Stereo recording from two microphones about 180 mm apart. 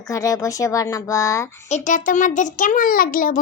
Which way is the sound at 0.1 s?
20° left (ahead or behind).